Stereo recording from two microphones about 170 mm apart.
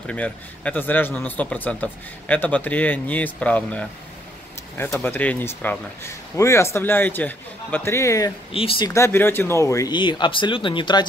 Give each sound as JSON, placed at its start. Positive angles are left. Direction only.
{"t": 0.0, "sound": "speech", "side_deg": 5}
{"t": 4.9, "sound": "speech", "side_deg": 10}
{"t": 8.5, "sound": "speech", "side_deg": 35}
{"t": 8.8, "sound": "speech", "side_deg": 15}